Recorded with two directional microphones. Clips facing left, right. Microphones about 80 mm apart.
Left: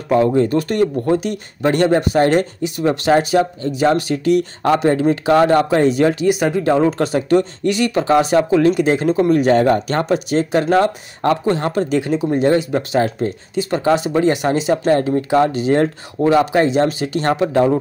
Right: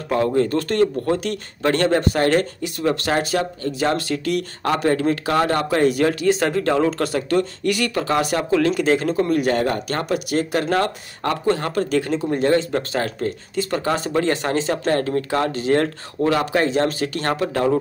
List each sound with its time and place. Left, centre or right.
0.1 s speech: left
6.4 s speech: centre
9.3 s speech: left